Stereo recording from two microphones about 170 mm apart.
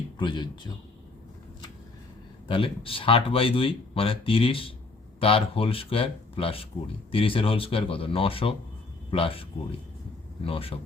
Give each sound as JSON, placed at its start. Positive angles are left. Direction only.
{"t": 0.2, "sound": "speech", "side_deg": 25}
{"t": 2.5, "sound": "speech", "side_deg": 30}